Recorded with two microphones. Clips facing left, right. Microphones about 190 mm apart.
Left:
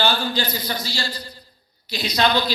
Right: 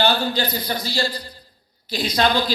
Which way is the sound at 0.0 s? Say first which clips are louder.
Right 2 dB; 60° right (ahead or behind).